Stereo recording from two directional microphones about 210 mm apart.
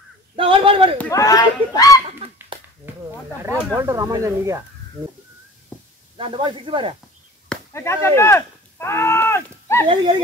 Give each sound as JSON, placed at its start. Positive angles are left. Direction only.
{"t": 0.4, "sound": "a sound", "side_deg": -25}
{"t": 0.9, "sound": "speech", "side_deg": 10}
{"t": 3.7, "sound": "speech", "side_deg": -15}
{"t": 6.1, "sound": "speech", "side_deg": -25}
{"t": 7.4, "sound": "speech", "side_deg": 15}